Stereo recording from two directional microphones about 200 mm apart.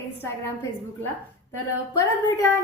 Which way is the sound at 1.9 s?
15° left (ahead or behind).